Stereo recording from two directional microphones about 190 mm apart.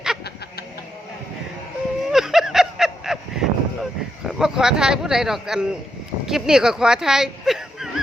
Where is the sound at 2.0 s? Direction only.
Centre (ahead or behind).